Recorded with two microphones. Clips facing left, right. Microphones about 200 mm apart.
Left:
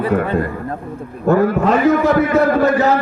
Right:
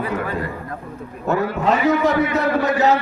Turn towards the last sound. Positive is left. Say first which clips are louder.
# left 3 dB
turn(degrees=50)  # may be behind; listen again after turning